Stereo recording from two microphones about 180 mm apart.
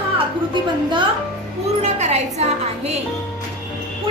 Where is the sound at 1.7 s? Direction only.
40° right (ahead or behind).